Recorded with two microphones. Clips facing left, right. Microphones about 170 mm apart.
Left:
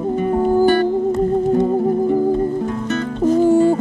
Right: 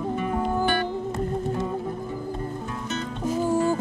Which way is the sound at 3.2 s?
70° left (ahead or behind).